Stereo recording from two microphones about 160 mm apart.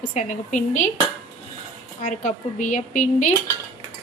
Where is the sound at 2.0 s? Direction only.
55° left (ahead or behind).